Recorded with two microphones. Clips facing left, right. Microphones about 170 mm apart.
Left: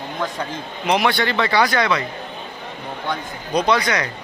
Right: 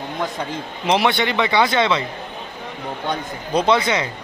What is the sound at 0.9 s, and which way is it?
A man's voice, 20° right (ahead or behind).